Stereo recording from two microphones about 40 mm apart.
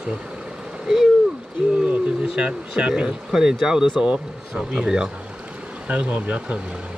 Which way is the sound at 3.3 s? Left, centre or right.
Centre.